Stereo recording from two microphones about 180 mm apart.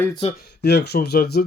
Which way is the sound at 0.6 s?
65° left (ahead or behind).